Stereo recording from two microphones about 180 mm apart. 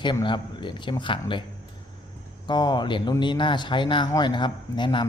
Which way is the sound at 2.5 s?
25° left (ahead or behind).